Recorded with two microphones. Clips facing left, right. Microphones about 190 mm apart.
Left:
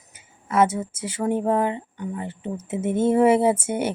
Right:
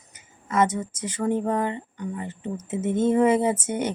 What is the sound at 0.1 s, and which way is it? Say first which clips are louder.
A woman's voice: left 2 dB; 10° left (ahead or behind).